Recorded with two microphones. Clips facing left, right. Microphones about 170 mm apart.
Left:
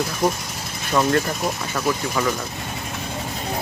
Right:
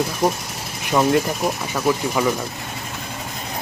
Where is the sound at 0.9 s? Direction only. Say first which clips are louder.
Right 2 dB; 15° right (ahead or behind).